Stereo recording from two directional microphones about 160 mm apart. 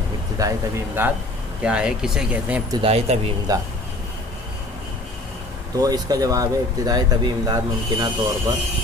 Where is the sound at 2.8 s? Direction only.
40° right (ahead or behind).